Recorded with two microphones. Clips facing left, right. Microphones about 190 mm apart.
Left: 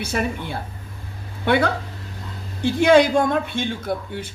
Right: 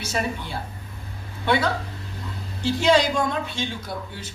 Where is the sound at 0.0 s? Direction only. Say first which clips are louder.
Left 3 dB; 55° left (ahead or behind).